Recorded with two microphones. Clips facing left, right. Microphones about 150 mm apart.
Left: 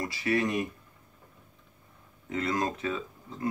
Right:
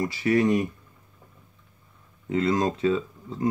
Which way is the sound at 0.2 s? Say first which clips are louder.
Right 7 dB; 30° right (ahead or behind).